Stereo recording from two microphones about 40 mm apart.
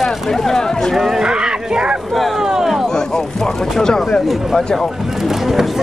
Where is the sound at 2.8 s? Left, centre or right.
Centre.